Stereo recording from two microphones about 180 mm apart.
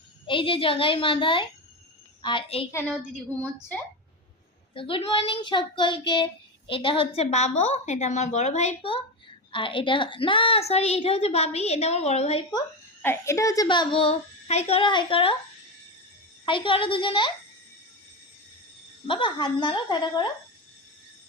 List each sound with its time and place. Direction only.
0.3 s a child's voice: 30° left (ahead or behind)
4.7 s a child's voice: 30° left (ahead or behind)
13.0 s a child's voice: 15° left (ahead or behind); by 15.4 s 30° left (ahead or behind)
16.5 s a child's voice: 25° left (ahead or behind)
19.0 s a child's voice: 30° left (ahead or behind)